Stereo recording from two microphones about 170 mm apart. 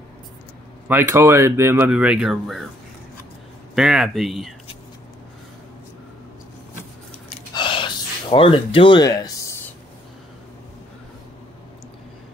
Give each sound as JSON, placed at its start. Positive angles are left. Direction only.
{"t": 0.8, "sound": "speech", "side_deg": -15}
{"t": 3.7, "sound": "speech", "side_deg": 0}
{"t": 7.5, "sound": "gasp", "side_deg": 30}